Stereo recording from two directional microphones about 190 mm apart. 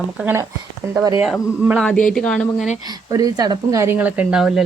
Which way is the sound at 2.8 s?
20° right (ahead or behind).